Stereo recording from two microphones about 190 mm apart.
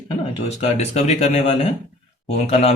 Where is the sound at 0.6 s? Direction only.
35° left (ahead or behind).